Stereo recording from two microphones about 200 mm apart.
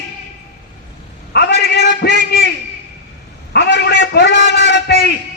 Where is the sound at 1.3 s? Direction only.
55° left (ahead or behind).